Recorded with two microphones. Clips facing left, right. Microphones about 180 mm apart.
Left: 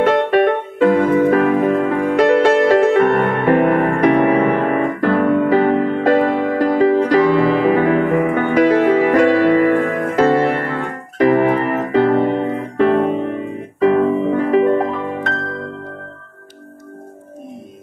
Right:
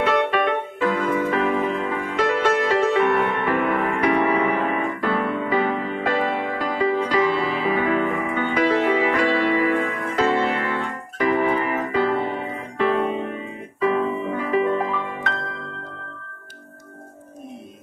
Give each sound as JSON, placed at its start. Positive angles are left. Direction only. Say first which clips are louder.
{"t": 0.0, "sound": "music", "louder": "left 7 dB", "side_deg": 50}
{"t": 12.4, "sound": "music", "louder": "left 7 dB", "side_deg": 45}